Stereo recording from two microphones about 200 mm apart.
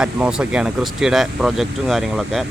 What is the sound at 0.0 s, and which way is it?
Speech, 5° right (ahead or behind).